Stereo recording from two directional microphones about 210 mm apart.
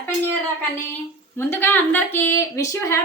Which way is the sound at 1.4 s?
10° left (ahead or behind).